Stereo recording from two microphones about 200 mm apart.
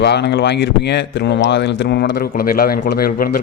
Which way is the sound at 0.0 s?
60° left (ahead or behind).